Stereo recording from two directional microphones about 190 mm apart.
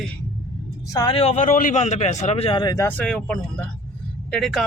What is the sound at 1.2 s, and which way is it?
Speech, 40° left (ahead or behind).